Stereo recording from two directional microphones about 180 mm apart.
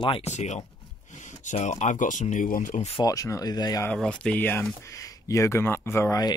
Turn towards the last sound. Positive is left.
turn(degrees=20)  # may be behind; listen again after turning